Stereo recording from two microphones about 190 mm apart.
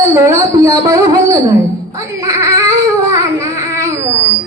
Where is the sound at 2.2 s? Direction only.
15° right (ahead or behind).